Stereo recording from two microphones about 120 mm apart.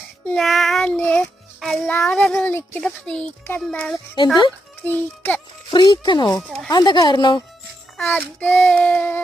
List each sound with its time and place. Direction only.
0.3 s child singing: centre (ahead or behind)
0.9 s a child's voice: 15° left (ahead or behind)
2.0 s child singing: 5° left (ahead or behind)
2.3 s speech: 20° left (ahead or behind)
2.8 s child singing: 5° left (ahead or behind)
5.7 s speech: 35° left (ahead or behind)
8.0 s child singing: 15° left (ahead or behind)